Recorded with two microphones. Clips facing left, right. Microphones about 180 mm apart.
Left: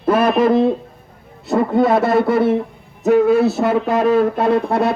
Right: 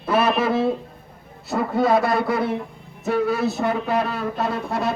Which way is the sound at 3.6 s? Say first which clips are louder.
Left 5 dB; 90° left.